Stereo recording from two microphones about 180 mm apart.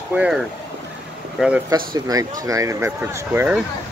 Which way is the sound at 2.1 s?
20° right (ahead or behind).